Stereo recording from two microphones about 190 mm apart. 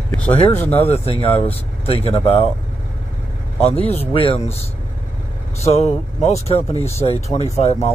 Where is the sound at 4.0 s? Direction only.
30° left (ahead or behind).